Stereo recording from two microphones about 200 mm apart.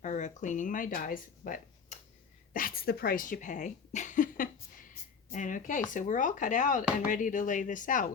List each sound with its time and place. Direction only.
0.0 s speech: 40° left (ahead or behind)